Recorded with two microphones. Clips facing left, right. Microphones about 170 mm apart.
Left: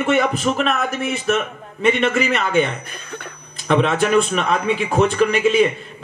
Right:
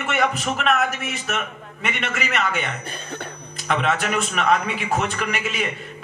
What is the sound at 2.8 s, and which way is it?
Speech, 30° right (ahead or behind).